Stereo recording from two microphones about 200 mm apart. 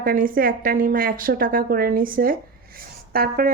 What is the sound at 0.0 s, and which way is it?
A woman's voice, 45° right (ahead or behind).